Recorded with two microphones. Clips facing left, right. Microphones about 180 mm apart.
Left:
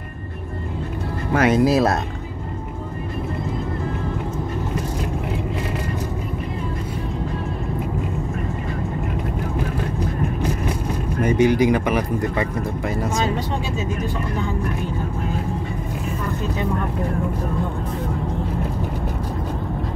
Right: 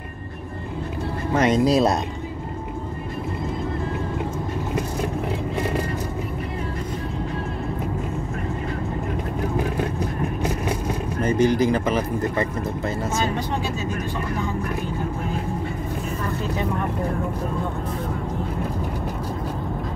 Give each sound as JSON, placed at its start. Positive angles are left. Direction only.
{"t": 1.4, "sound": "speech", "side_deg": 5}
{"t": 11.2, "sound": "speech", "side_deg": 10}